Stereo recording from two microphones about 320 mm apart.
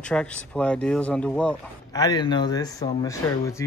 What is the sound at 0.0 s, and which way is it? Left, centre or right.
Speech, centre.